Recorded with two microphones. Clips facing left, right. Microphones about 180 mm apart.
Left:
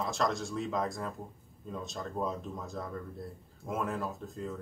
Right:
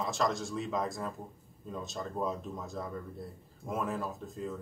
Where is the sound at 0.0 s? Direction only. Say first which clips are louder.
Even; centre (ahead or behind).